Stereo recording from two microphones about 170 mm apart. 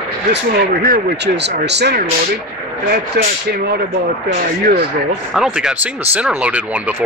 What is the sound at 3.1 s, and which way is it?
Speech, 70° right (ahead or behind).